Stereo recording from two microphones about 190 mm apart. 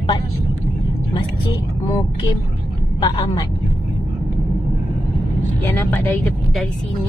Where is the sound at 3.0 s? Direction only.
25° left (ahead or behind).